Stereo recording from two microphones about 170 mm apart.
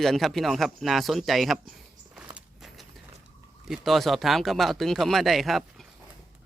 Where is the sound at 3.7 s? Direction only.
Centre (ahead or behind).